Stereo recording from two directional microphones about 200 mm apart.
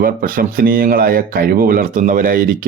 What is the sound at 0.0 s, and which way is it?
Speech, 45° right (ahead or behind).